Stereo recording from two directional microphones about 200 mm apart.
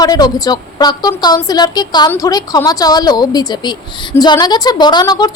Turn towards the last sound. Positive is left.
turn(degrees=20)  # may be behind; listen again after turning